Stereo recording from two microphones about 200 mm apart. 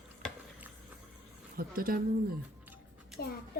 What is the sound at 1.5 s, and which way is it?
Speech, 45° right (ahead or behind).